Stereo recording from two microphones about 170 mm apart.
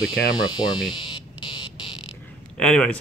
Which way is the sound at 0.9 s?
30° left (ahead or behind).